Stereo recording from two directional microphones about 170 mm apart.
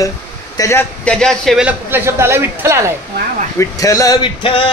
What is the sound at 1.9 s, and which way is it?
Speech, 15° right (ahead or behind).